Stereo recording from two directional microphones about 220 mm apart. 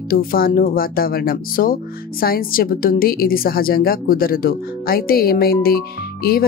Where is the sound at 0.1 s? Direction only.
40° left (ahead or behind).